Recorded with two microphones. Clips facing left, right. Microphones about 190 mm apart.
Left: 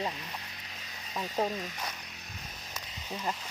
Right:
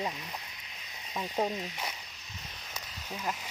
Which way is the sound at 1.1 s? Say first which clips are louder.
Even; centre (ahead or behind).